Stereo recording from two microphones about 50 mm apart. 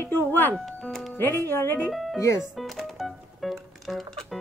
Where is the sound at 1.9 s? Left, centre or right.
Centre.